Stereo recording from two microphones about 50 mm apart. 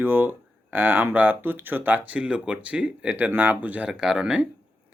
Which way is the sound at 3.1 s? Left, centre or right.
Right.